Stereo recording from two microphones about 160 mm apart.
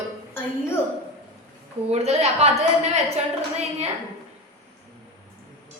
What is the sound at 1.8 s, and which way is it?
Speech, 40° right (ahead or behind).